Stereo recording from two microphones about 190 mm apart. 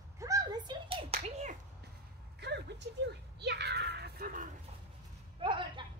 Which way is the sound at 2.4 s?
60° right (ahead or behind).